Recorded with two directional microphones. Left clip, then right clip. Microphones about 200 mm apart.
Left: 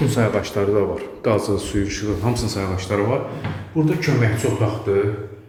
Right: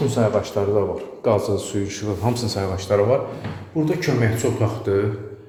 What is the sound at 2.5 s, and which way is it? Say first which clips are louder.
A man's voice: right 3 dB; 15° right (ahead or behind).